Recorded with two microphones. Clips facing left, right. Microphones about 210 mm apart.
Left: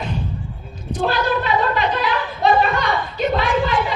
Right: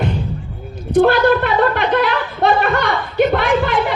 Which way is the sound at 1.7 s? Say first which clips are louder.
Right 4 dB; 60° right (ahead or behind).